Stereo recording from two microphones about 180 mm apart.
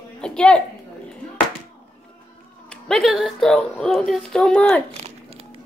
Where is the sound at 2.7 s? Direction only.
Centre (ahead or behind).